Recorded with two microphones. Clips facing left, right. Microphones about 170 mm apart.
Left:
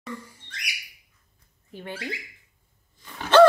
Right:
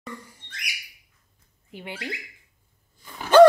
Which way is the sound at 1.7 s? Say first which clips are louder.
Left 1 dB; 15° right (ahead or behind).